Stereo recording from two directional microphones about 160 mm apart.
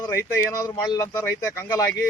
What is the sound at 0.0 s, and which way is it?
Speech, 15° left (ahead or behind).